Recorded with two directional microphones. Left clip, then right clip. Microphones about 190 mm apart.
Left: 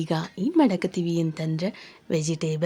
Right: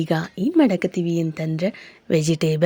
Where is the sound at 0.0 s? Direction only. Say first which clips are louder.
Right 5 dB; 20° right (ahead or behind).